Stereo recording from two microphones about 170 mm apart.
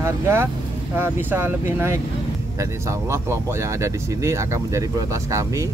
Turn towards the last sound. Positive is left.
turn(degrees=-20)  # may be behind; listen again after turning